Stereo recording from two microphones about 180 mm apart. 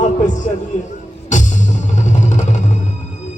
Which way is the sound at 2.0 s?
45° left (ahead or behind).